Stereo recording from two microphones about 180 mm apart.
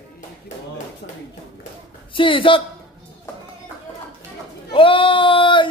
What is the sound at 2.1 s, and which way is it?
Speech, 30° left (ahead or behind).